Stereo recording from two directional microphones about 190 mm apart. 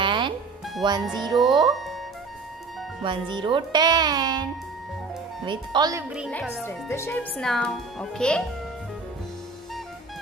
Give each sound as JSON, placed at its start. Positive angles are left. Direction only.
{"t": 0.0, "sound": "music", "side_deg": -25}
{"t": 0.8, "sound": "speech", "side_deg": -25}
{"t": 1.7, "sound": "speech", "side_deg": 0}
{"t": 3.0, "sound": "speech", "side_deg": -25}
{"t": 6.0, "sound": "a child's voice", "side_deg": -5}
{"t": 6.6, "sound": "a child's voice", "side_deg": 10}